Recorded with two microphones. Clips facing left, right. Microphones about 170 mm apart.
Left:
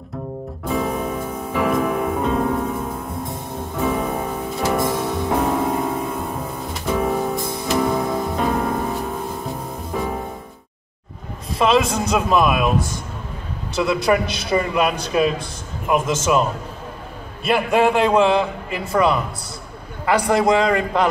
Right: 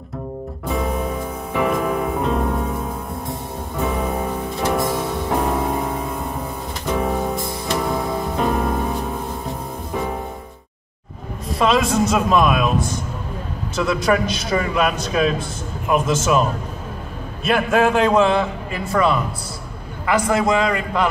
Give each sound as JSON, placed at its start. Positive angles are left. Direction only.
{"t": 0.7, "sound": "music", "side_deg": 0}
{"t": 12.3, "sound": "a man's voice", "side_deg": 10}
{"t": 13.8, "sound": "a man's voice", "side_deg": 15}
{"t": 17.5, "sound": "a man's voice", "side_deg": 10}
{"t": 20.1, "sound": "a man's voice", "side_deg": 30}